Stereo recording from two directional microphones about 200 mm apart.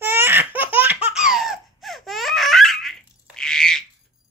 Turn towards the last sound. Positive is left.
turn(degrees=5)  # may be behind; listen again after turning